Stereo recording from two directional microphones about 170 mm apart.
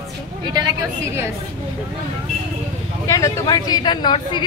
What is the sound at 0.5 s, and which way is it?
Speech, 25° right (ahead or behind).